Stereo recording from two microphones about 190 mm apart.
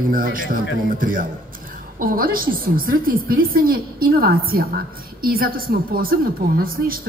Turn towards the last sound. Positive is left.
turn(degrees=-50)  # may be behind; listen again after turning